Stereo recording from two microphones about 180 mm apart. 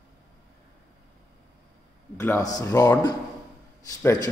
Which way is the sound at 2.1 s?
15° left (ahead or behind).